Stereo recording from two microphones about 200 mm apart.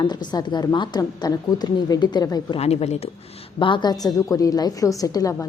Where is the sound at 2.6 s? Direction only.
30° left (ahead or behind).